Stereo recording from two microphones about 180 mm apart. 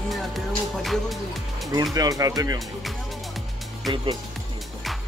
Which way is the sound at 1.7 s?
20° right (ahead or behind).